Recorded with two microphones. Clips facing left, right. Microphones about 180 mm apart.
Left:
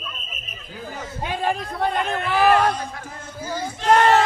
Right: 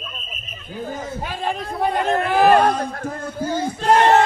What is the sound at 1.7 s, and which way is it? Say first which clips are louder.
Speech: right 6 dB; 15° right (ahead or behind).